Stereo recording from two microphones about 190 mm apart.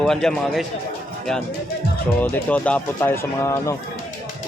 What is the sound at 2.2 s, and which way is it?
Speech, 10° left (ahead or behind).